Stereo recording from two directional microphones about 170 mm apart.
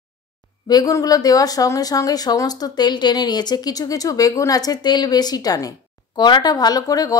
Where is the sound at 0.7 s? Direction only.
20° left (ahead or behind).